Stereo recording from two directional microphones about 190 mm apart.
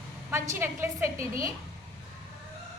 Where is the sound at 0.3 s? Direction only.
15° right (ahead or behind).